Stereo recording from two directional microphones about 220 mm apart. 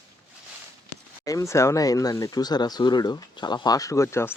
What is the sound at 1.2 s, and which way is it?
Speech, 15° left (ahead or behind).